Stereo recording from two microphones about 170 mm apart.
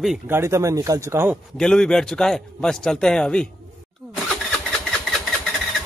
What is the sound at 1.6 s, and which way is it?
A man's voice, 5° left (ahead or behind).